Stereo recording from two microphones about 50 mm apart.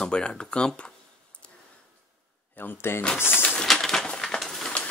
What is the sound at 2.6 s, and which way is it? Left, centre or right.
Speech, left.